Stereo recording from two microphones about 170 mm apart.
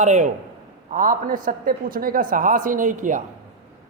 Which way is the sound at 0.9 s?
55° right (ahead or behind).